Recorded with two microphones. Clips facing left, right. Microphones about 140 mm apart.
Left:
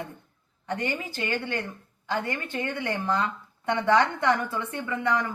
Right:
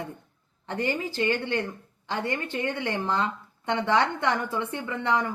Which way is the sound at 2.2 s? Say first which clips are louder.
Right 2 dB; 25° right (ahead or behind).